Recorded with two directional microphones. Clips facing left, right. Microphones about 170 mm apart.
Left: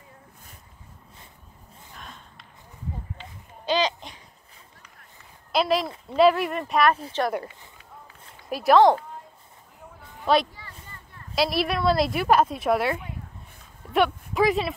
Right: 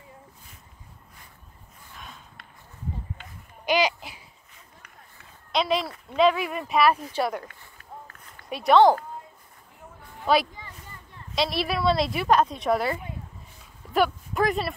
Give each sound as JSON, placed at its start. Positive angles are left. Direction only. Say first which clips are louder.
{"t": 2.0, "sound": "gasp", "louder": "even", "side_deg": 0}
{"t": 3.6, "sound": "a sound", "louder": "right 1 dB", "side_deg": -10}
{"t": 5.5, "sound": "a woman's voice", "louder": "left 2 dB", "side_deg": 0}
{"t": 7.7, "sound": "run", "louder": "right 4 dB", "side_deg": -50}
{"t": 8.5, "sound": "a woman's voice", "louder": "even", "side_deg": 0}
{"t": 10.2, "sound": "a woman's voice", "louder": "left 1 dB", "side_deg": 0}